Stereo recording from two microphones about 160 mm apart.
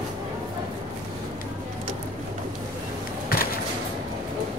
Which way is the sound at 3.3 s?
70° left (ahead or behind).